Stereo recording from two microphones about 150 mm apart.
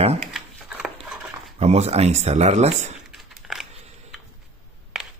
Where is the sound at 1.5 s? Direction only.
45° right (ahead or behind).